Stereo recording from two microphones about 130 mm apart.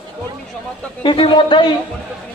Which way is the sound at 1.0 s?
40° left (ahead or behind).